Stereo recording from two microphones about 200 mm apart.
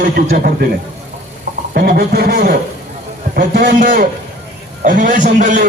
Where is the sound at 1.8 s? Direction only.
50° right (ahead or behind).